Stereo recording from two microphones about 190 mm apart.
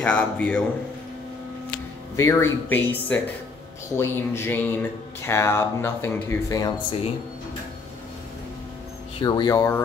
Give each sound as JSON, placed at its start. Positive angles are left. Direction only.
{"t": 0.0, "sound": "speech", "side_deg": 5}
{"t": 2.1, "sound": "speech", "side_deg": 15}
{"t": 9.2, "sound": "speech", "side_deg": 20}